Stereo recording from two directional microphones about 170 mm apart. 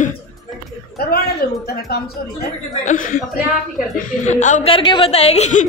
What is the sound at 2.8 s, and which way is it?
Speech, 50° left (ahead or behind).